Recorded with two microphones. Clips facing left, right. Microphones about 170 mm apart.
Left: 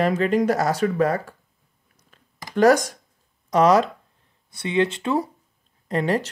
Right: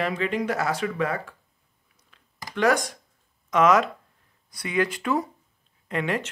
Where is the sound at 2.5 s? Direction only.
40° left (ahead or behind).